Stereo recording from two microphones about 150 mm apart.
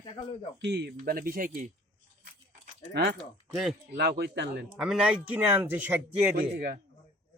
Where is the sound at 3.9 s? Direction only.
90° right.